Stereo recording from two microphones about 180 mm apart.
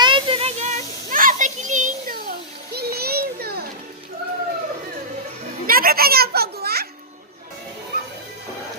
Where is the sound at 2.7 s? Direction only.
60° right (ahead or behind).